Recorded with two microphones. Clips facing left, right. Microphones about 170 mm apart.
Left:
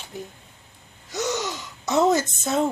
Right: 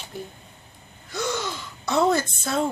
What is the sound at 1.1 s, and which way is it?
Gasp, 20° left (ahead or behind).